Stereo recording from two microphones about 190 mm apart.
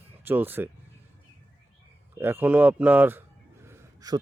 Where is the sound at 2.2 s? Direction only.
10° right (ahead or behind).